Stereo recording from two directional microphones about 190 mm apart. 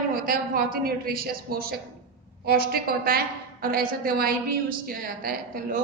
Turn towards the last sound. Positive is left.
turn(degrees=-50)  # may be behind; listen again after turning